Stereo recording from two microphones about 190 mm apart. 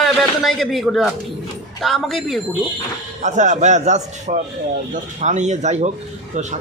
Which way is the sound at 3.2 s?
40° right (ahead or behind).